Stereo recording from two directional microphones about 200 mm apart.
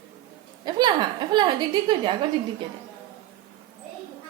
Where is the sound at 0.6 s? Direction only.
20° right (ahead or behind).